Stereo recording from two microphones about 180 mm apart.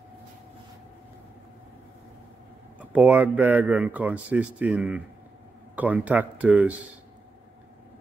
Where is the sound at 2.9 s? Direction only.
10° right (ahead or behind).